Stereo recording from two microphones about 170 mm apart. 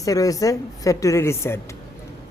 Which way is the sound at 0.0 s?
20° left (ahead or behind).